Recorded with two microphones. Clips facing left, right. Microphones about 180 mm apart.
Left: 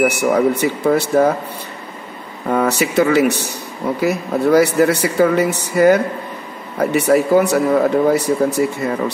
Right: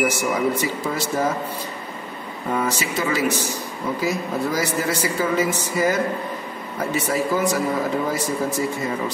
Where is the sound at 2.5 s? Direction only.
65° left (ahead or behind).